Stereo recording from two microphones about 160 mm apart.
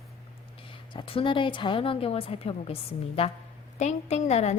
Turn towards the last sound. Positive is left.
turn(degrees=45)  # may be behind; listen again after turning